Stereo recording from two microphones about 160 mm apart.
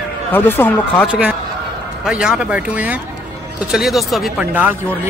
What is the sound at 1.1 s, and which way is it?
Speech, 10° right (ahead or behind).